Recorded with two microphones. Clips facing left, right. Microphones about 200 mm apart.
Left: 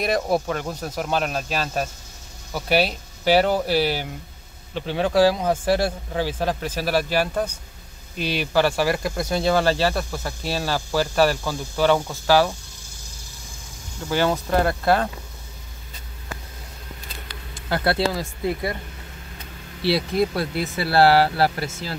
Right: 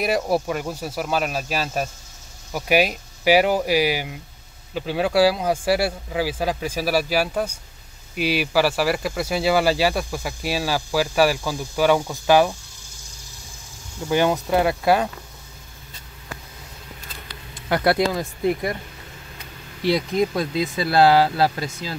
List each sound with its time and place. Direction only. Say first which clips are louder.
0.0 s speech: right 1 dB; 10° right (ahead or behind)
14.0 s speech: right 2 dB; 15° right (ahead or behind)
17.6 s speech: right 2 dB; 20° right (ahead or behind)
19.8 s speech: right 1 dB; 15° right (ahead or behind)